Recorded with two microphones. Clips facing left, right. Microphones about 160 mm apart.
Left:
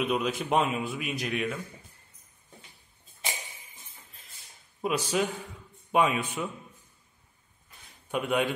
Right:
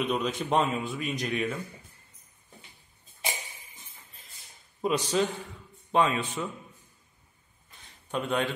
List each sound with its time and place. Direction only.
0.0 s a man's voice: 5° left (ahead or behind)
4.8 s a man's voice: 10° left (ahead or behind)
8.1 s a man's voice: 10° left (ahead or behind)